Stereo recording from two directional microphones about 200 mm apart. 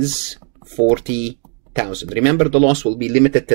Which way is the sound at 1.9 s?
5° right (ahead or behind).